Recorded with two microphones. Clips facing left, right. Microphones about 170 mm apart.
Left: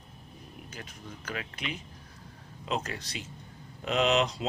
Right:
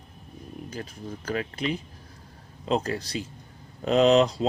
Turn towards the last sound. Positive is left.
turn(degrees=-35)  # may be behind; listen again after turning